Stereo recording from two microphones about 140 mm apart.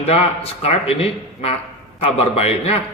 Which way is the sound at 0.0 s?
45° left (ahead or behind).